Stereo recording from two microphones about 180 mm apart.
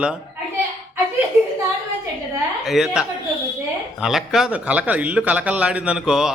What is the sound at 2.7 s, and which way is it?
Speech, centre (ahead or behind).